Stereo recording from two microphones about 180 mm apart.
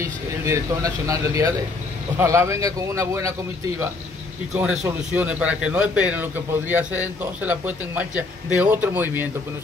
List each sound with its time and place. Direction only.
0.0 s a man's voice: 15° right (ahead or behind)
4.6 s a man's voice: 10° right (ahead or behind)